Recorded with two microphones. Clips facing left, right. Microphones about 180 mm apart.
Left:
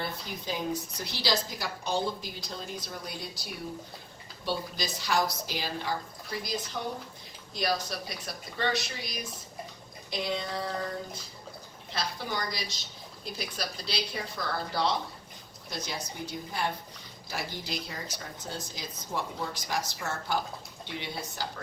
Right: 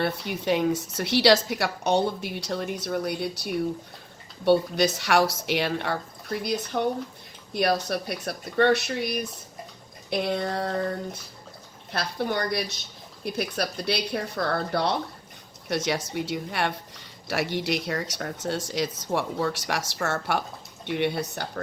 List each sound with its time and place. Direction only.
0.0 s a woman's voice: 70° right (ahead or behind)
15.7 s a woman's voice: 75° right (ahead or behind)
20.8 s speech: 60° right (ahead or behind)